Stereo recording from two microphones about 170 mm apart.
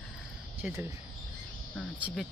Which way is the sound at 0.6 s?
5° right (ahead or behind).